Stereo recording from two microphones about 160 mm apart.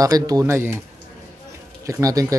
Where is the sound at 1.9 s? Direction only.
20° right (ahead or behind).